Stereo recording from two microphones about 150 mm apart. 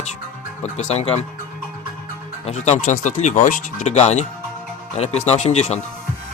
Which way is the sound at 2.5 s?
50° left (ahead or behind).